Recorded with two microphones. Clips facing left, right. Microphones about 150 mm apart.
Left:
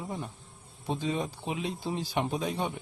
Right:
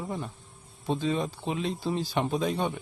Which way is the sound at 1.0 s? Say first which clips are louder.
Right 2 dB; 15° left (ahead or behind).